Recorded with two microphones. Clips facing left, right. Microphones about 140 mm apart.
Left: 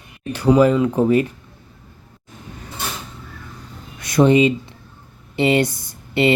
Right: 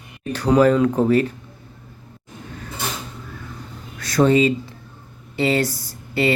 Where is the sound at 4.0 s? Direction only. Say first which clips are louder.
Left 2 dB; 15° left (ahead or behind).